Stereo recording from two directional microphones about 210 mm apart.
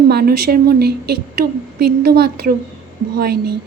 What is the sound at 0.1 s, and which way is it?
A woman's voice, 50° right (ahead or behind).